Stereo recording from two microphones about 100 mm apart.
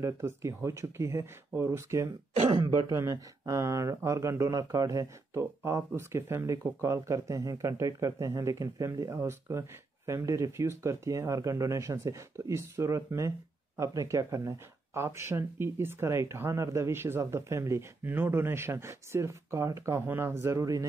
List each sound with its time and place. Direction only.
0.0 s speech: 30° right (ahead or behind)
2.5 s speech: 50° right (ahead or behind)
2.9 s speech: 30° right (ahead or behind)